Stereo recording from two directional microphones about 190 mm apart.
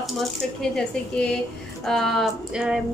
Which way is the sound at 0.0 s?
Centre (ahead or behind).